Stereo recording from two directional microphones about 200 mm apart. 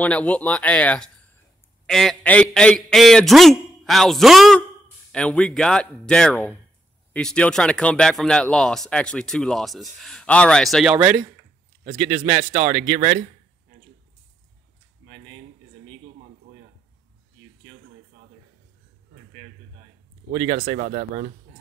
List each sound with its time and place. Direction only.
0.0 s speech: 5° left (ahead or behind)
12.1 s speech: 30° right (ahead or behind)
20.2 s speech: 40° right (ahead or behind)